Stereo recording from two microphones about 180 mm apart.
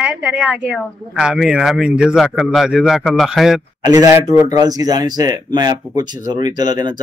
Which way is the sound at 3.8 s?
20° right (ahead or behind).